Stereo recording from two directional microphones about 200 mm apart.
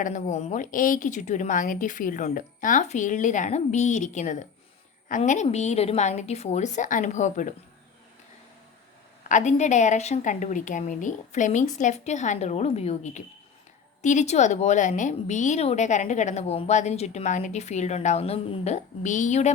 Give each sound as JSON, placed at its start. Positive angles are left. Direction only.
{"t": 0.0, "sound": "a woman's voice", "side_deg": 35}
{"t": 9.3, "sound": "a woman's voice", "side_deg": 35}